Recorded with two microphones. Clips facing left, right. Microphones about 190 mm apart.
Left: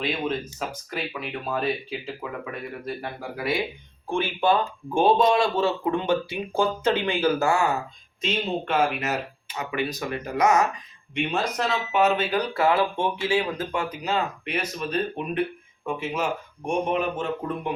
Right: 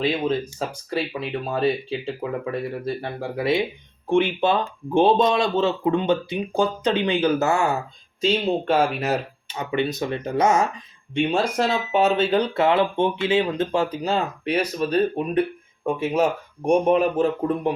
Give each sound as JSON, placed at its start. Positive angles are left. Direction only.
{"t": 0.9, "sound": "speech", "side_deg": -30}
{"t": 8.2, "sound": "speech", "side_deg": -35}